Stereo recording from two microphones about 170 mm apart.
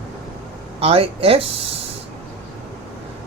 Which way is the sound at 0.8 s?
35° right (ahead or behind).